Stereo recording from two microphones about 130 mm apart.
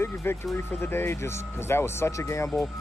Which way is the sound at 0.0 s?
20° left (ahead or behind).